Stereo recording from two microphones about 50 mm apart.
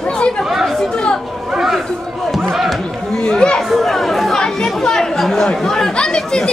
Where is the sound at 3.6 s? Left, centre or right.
Centre.